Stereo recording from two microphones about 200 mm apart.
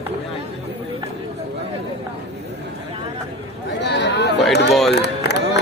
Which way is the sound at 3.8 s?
60° left (ahead or behind).